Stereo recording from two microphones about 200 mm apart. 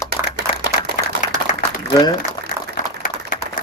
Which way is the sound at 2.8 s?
40° left (ahead or behind).